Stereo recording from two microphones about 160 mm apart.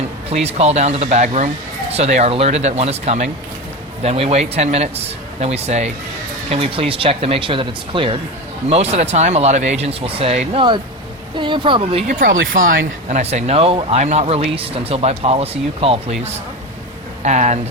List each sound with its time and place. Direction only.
0.3 s speech: 40° right (ahead or behind)
8.7 s speech: 40° right (ahead or behind)
12.2 s speech: 60° right (ahead or behind); by 16.1 s 40° right (ahead or behind)
17.2 s speech: 45° right (ahead or behind)